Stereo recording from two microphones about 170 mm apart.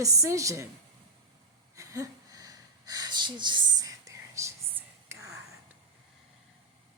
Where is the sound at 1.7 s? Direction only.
20° right (ahead or behind).